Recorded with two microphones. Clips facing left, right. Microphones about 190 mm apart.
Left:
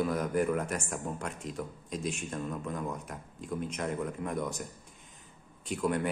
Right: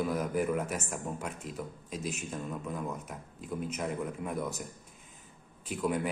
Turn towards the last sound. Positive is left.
turn(degrees=-5)  # may be behind; listen again after turning